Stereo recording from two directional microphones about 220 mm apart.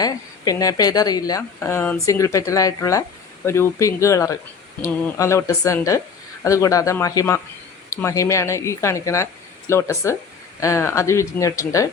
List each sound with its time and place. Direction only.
0.0 s a woman's voice: 15° left (ahead or behind)